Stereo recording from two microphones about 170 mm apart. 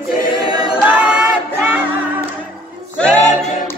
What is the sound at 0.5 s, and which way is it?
A capella, 25° right (ahead or behind).